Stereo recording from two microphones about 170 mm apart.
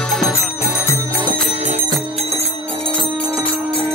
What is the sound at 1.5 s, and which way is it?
Music, 40° right (ahead or behind).